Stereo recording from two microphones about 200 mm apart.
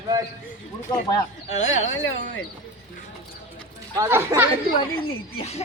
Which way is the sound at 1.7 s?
80° left.